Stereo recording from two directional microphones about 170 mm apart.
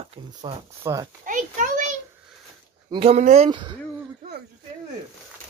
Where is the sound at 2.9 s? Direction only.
35° right (ahead or behind).